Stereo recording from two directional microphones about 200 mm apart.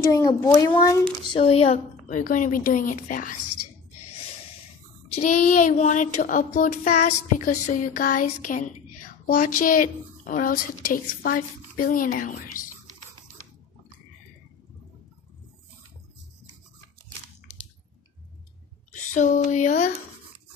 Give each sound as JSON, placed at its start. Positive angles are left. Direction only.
{"t": 0.1, "sound": "a child's voice", "side_deg": 20}
{"t": 1.2, "sound": "a woman's voice", "side_deg": 25}
{"t": 5.2, "sound": "a woman's voice", "side_deg": 40}
{"t": 18.9, "sound": "a sound", "side_deg": 40}